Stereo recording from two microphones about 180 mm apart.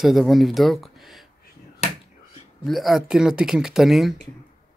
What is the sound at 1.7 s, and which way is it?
Finger snapping, 35° left (ahead or behind).